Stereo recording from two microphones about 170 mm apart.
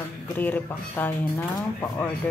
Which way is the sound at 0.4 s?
10° left (ahead or behind).